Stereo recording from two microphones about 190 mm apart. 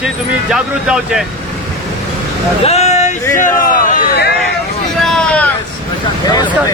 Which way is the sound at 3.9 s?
50° left (ahead or behind).